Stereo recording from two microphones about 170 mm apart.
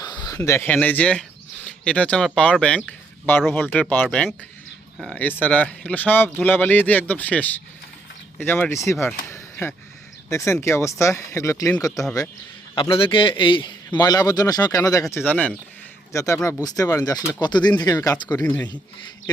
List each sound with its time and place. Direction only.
0.3 s speech: 15° left (ahead or behind)
9.2 s a sound: 15° left (ahead or behind)
10.2 s a man's voice: 15° left (ahead or behind)
12.7 s a man's voice: 30° left (ahead or behind)
18.4 s speech: 10° left (ahead or behind)